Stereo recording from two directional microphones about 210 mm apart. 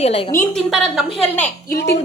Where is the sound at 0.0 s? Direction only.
30° left (ahead or behind).